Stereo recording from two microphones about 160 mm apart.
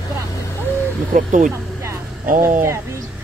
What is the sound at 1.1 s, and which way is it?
Speech, 55° right (ahead or behind).